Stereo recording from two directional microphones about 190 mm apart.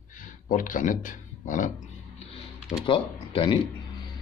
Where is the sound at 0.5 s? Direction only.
45° left (ahead or behind).